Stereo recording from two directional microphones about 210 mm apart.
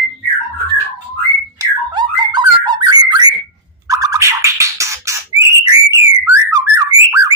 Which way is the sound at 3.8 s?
15° right (ahead or behind).